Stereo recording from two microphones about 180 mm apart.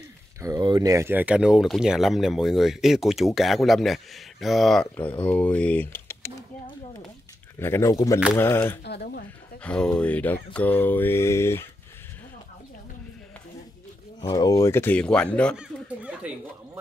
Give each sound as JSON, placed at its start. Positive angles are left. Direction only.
{"t": 0.4, "sound": "speech", "side_deg": -20}
{"t": 7.5, "sound": "mantra", "side_deg": 15}
{"t": 8.8, "sound": "speech", "side_deg": 65}
{"t": 9.6, "sound": "mantra", "side_deg": 5}
{"t": 14.2, "sound": "mantra", "side_deg": 20}
{"t": 15.5, "sound": "a sound", "side_deg": -5}